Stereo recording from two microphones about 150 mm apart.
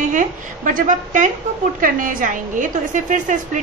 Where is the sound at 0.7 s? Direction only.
60° right (ahead or behind).